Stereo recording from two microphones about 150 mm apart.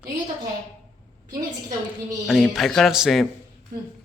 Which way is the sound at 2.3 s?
5° right (ahead or behind).